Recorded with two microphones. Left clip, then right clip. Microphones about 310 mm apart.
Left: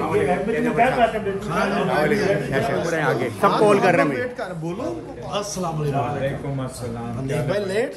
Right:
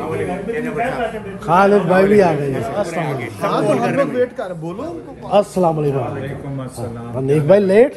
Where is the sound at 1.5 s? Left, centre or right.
Centre.